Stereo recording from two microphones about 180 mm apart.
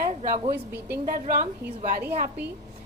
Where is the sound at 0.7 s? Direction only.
65° right (ahead or behind).